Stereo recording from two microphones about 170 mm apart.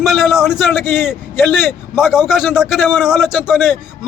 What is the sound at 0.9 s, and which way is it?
Speech, 10° left (ahead or behind).